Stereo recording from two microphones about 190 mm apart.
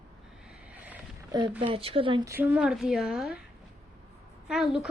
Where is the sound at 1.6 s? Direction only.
30° right (ahead or behind).